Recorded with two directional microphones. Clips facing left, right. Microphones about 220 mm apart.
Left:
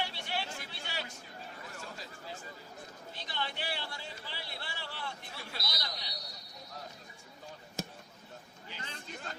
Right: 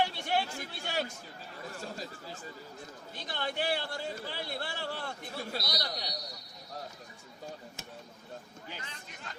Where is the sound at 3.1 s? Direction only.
50° right (ahead or behind).